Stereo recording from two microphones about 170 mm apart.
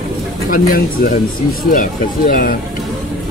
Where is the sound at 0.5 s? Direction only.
55° left (ahead or behind).